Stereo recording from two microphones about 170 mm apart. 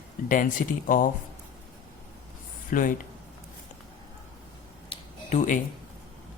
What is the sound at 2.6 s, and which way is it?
Speech, 55° left (ahead or behind).